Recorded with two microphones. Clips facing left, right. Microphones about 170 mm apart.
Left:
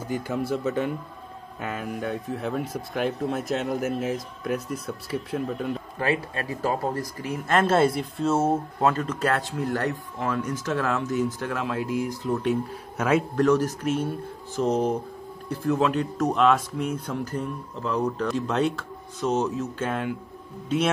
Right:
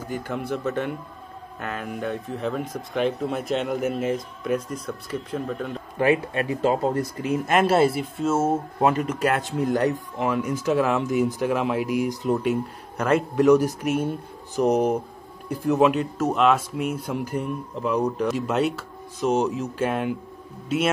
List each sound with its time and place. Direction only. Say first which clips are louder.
0.3 s speech: even; 10° left (ahead or behind)
5.9 s speech: right 8 dB; 20° right (ahead or behind)
7.7 s speech: right 1 dB; 5° right (ahead or behind)
8.7 s speech: right 2 dB; 15° right (ahead or behind)
12.4 s speech: right 1 dB; centre (ahead or behind)
13.4 s speech: right 4 dB; 10° right (ahead or behind)
20.6 s speech: right 1 dB; 5° right (ahead or behind)